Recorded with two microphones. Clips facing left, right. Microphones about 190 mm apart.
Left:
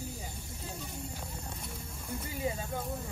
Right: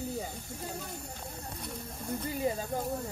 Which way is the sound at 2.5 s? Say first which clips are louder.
Right 3 dB; 35° right (ahead or behind).